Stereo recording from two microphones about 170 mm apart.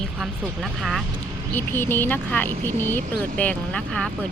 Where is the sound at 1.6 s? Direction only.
10° left (ahead or behind).